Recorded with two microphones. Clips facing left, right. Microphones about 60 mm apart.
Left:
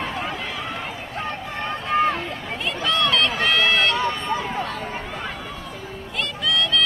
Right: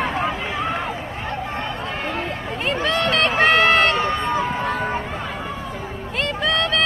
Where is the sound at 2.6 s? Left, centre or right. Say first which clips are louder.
Right 2 dB; right.